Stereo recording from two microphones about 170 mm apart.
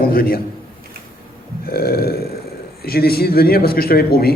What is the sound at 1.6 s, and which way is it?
Burping, 65° left (ahead or behind).